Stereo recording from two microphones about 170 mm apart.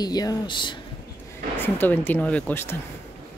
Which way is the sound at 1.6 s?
10° left (ahead or behind).